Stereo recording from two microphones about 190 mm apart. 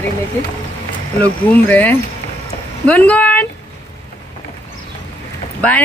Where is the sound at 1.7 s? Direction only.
10° left (ahead or behind).